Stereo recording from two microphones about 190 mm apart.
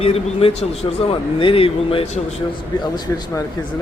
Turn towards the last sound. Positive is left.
turn(degrees=20)  # may be behind; listen again after turning